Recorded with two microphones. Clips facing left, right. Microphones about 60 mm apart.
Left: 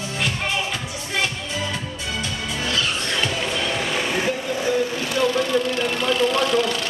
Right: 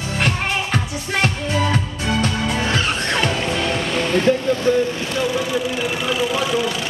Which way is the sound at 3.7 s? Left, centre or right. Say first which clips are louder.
Right 4 dB; centre.